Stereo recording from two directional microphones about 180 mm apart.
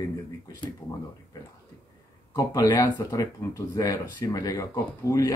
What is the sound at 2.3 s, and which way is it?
Speech, 20° left (ahead or behind).